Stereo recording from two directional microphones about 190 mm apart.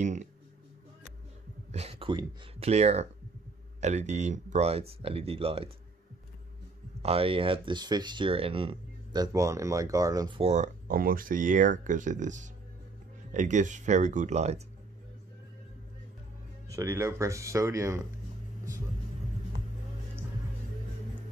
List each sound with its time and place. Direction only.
0.0 s speech: 40° right (ahead or behind)
1.7 s speech: 30° right (ahead or behind)
7.0 s speech: 30° right (ahead or behind)
16.6 s speech: 15° right (ahead or behind)